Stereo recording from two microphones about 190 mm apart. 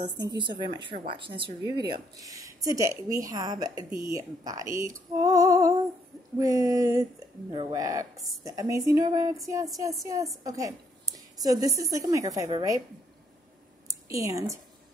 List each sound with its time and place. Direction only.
0.3 s a woman's voice: 25° right (ahead or behind)
13.8 s speech: 15° right (ahead or behind)